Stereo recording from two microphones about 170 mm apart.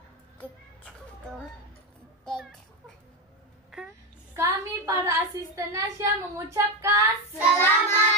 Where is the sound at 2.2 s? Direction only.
5° left (ahead or behind).